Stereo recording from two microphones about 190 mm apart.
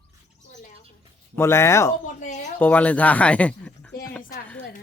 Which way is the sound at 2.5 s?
10° left (ahead or behind).